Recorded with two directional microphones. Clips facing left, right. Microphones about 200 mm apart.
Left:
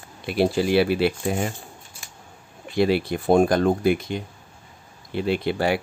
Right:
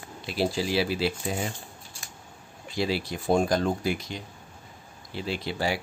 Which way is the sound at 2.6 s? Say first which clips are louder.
Left 8 dB; 60° left (ahead or behind).